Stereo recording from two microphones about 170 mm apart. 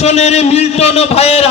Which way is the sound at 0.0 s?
40° left (ahead or behind).